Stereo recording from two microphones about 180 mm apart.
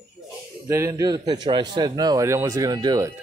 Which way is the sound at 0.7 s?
15° right (ahead or behind).